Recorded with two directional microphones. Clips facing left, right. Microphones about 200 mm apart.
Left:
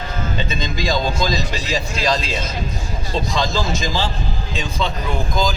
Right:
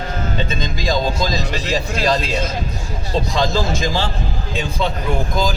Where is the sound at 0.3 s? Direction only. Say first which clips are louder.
Right 1 dB; 50° right (ahead or behind).